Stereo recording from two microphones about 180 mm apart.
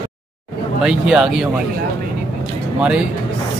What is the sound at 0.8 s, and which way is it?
Speech, 5° right (ahead or behind).